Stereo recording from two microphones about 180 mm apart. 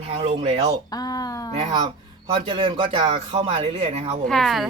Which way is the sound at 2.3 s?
25° right (ahead or behind).